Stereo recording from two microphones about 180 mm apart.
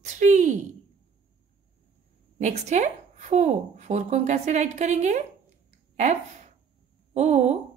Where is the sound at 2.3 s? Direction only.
40° right (ahead or behind).